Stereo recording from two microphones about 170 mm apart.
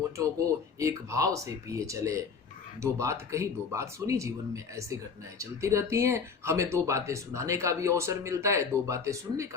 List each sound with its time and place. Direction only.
0.2 s speech: 20° right (ahead or behind)